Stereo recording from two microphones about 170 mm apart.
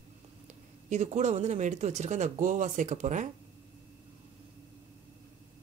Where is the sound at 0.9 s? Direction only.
45° right (ahead or behind).